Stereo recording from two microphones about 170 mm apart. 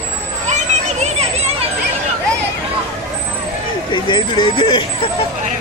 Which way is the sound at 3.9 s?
30° left (ahead or behind).